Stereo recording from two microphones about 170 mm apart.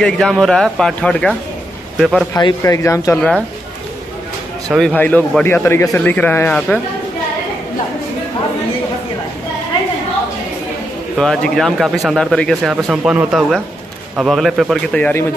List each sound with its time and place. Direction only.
0.0 s a man's voice: centre (ahead or behind)
2.3 s speech: 20° left (ahead or behind)
4.6 s speech: centre (ahead or behind)
11.1 s speech: 5° left (ahead or behind)